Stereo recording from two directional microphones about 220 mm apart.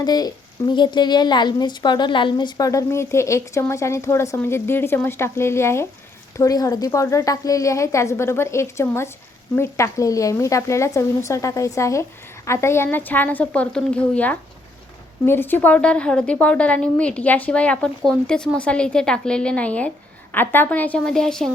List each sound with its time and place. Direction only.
0.0 s a woman's voice: 20° left (ahead or behind)